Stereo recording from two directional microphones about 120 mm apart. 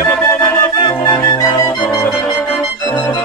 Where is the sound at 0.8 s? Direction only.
35° left (ahead or behind).